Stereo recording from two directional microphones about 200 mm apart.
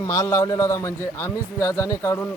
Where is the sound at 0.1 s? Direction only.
15° left (ahead or behind).